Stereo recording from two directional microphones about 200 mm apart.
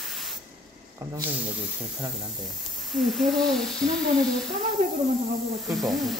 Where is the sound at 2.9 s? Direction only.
Centre (ahead or behind).